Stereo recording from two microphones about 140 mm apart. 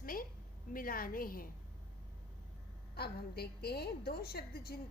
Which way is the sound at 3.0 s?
90° left.